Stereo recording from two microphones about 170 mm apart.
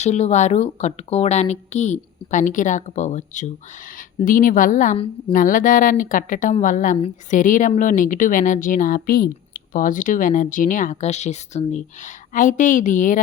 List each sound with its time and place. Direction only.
0.0 s speech: 40° left (ahead or behind)